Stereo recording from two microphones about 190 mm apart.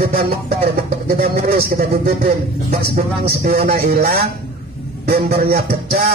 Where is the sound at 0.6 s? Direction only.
55° right (ahead or behind).